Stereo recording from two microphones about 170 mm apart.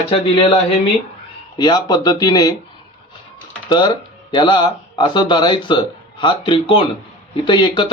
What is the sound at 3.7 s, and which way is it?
Speech, 25° left (ahead or behind).